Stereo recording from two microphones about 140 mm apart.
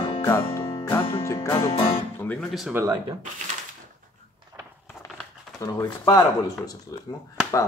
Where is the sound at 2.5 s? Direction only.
Centre (ahead or behind).